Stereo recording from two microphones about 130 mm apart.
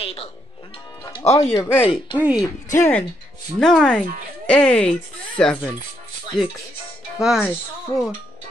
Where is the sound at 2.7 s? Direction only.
20° left (ahead or behind).